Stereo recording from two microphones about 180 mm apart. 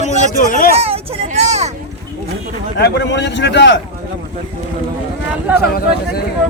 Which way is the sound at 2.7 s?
65° left (ahead or behind).